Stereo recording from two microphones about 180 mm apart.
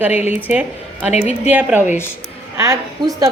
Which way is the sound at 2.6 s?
20° right (ahead or behind).